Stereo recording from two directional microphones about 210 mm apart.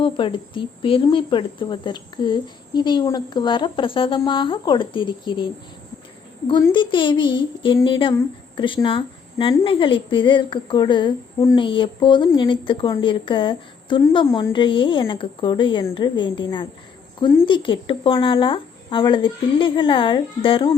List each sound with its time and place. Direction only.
0.0 s a woman's voice: 25° left (ahead or behind)
6.5 s a woman's voice: 20° left (ahead or behind)